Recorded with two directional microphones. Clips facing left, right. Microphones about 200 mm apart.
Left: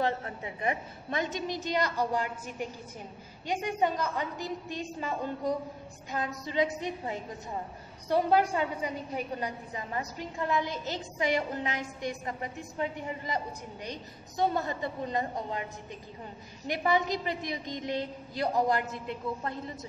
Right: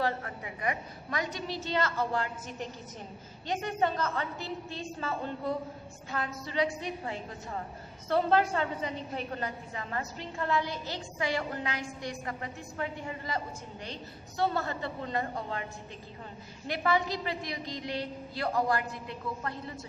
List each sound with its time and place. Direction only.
0.0 s a woman's voice: 25° left (ahead or behind)
16.6 s a woman's voice: 20° left (ahead or behind)